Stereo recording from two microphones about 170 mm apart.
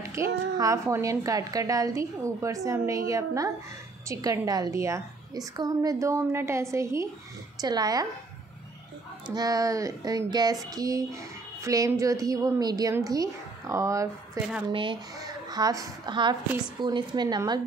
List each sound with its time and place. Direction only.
0.0 s a woman's voice: 15° right (ahead or behind)
9.3 s a woman's voice: 20° right (ahead or behind)
14.7 s a woman's voice: 30° right (ahead or behind)